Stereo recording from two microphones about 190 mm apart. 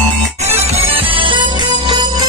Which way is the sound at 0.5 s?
35° right (ahead or behind).